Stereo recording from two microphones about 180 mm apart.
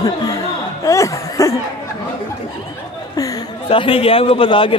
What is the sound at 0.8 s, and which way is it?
Cough, 15° left (ahead or behind).